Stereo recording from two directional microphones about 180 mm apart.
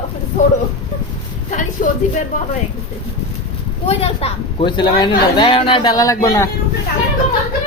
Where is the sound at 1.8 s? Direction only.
50° left (ahead or behind).